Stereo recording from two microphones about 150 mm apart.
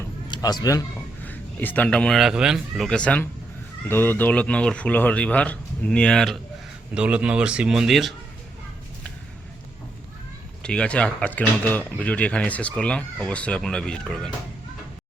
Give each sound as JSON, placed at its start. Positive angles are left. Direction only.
{"t": 0.3, "sound": "speech", "side_deg": 25}
{"t": 1.2, "sound": "speech", "side_deg": 10}
{"t": 6.9, "sound": "a man's voice", "side_deg": -5}
{"t": 10.6, "sound": "speech", "side_deg": 5}